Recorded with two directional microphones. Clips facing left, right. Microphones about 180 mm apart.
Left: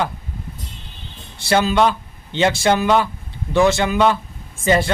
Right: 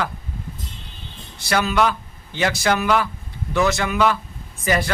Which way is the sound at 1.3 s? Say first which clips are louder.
Left 3 dB; 30° left (ahead or behind).